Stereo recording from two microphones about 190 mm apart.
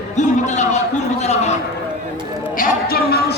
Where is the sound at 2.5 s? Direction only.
50° left (ahead or behind).